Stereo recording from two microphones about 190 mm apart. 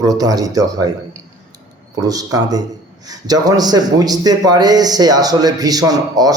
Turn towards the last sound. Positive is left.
turn(degrees=-20)  # may be behind; listen again after turning